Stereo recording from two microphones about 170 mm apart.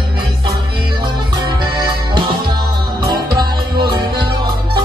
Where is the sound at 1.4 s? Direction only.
25° right (ahead or behind).